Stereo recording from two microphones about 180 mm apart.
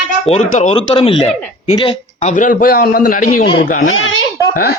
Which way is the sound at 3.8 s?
90° left.